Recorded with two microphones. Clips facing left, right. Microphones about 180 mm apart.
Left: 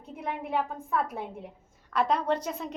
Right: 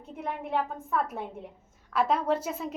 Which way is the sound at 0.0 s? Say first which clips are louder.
Even; centre (ahead or behind).